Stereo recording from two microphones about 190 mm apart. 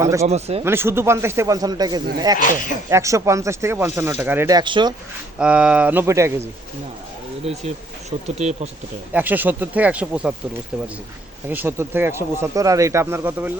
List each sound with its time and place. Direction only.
0.0 s speech: 15° right (ahead or behind)
0.3 s speech: 35° right (ahead or behind)
0.6 s speech: 10° right (ahead or behind)
2.4 s speech: 45° left (ahead or behind)
2.9 s speech: 15° right (ahead or behind)
5.4 s speech: 5° right (ahead or behind)
8.4 s speech: 35° right (ahead or behind)
9.1 s speech: 10° right (ahead or behind)
11.4 s speech: 10° right (ahead or behind)